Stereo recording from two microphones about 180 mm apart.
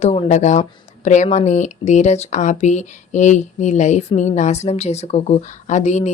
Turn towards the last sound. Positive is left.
turn(degrees=40)  # may be behind; listen again after turning